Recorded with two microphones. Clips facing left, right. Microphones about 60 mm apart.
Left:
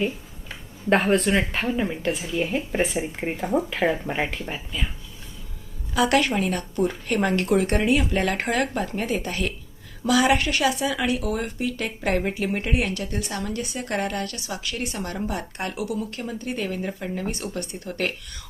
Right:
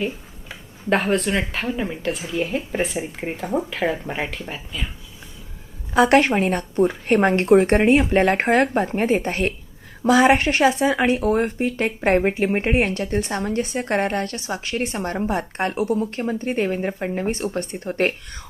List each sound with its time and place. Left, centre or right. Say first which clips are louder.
0.0 s speech: even; centre
5.9 s speech: right 5 dB; right